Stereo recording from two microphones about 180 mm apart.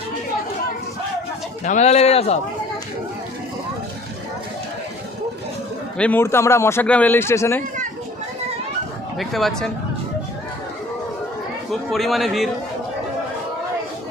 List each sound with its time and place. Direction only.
1.6 s speech: 40° left (ahead or behind)
6.0 s a man's voice: 10° left (ahead or behind)
9.1 s a man's voice: centre (ahead or behind)
11.7 s a man's voice: centre (ahead or behind)